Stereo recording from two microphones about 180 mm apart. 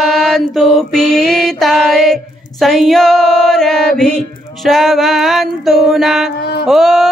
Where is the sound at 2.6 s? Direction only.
Centre (ahead or behind).